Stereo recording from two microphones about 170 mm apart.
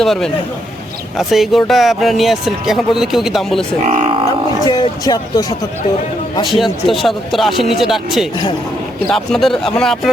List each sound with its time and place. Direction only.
0.0 s a man's voice: centre (ahead or behind)
1.3 s speech: centre (ahead or behind)
4.6 s speech: 25° left (ahead or behind)
6.4 s speech: centre (ahead or behind)